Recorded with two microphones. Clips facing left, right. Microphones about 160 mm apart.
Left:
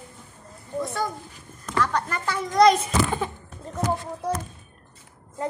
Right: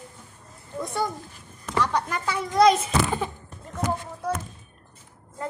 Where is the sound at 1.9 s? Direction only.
10° right (ahead or behind).